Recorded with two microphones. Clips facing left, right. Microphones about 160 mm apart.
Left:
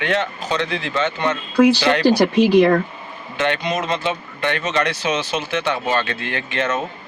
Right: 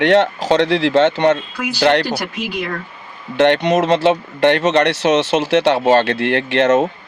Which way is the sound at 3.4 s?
75° right (ahead or behind).